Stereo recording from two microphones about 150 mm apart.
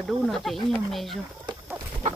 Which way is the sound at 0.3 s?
Centre (ahead or behind).